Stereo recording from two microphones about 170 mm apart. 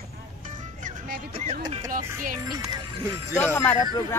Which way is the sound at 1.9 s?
55° right (ahead or behind).